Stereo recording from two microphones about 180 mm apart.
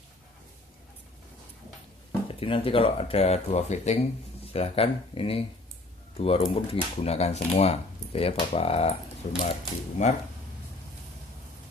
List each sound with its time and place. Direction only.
2.4 s speech: 30° left (ahead or behind)